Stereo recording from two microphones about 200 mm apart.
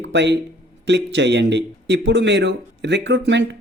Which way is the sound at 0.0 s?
60° right (ahead or behind).